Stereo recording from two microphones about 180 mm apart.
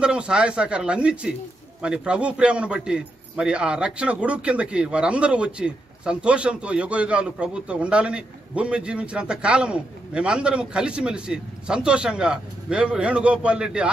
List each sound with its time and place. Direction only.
0.0 s a man's voice: 5° right (ahead or behind)